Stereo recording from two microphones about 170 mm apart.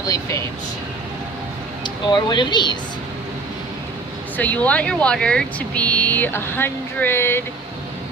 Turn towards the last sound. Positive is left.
turn(degrees=15)  # may be behind; listen again after turning